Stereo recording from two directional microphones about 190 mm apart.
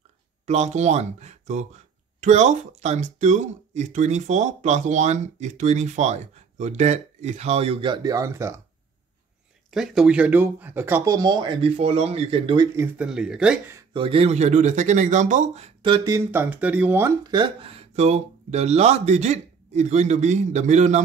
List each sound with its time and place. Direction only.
0.5 s speech: 35° right (ahead or behind); by 8.5 s 15° right (ahead or behind)
9.7 s speech: 5° right (ahead or behind); by 12.6 s 30° right (ahead or behind)
12.7 s speech: 10° right (ahead or behind)
13.7 s speech: 25° right (ahead or behind); by 17.1 s 10° right (ahead or behind)
17.3 s speech: 25° right (ahead or behind)